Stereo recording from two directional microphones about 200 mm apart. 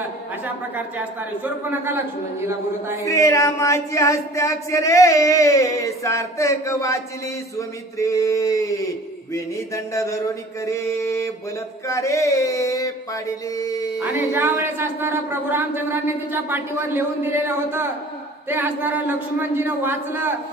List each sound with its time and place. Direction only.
0.7 s speech: 10° right (ahead or behind)
3.0 s a sound: 15° left (ahead or behind)
14.0 s speech: 10° right (ahead or behind)